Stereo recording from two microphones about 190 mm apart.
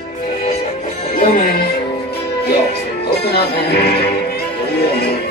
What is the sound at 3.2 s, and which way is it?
Music, 60° left (ahead or behind).